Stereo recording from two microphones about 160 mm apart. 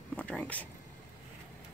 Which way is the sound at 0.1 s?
10° left (ahead or behind).